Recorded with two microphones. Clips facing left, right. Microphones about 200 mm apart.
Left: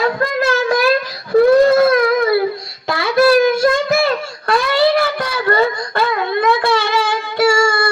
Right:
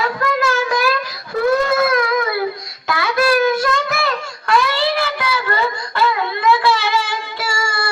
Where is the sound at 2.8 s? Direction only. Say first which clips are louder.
Left 4 dB; 30° left (ahead or behind).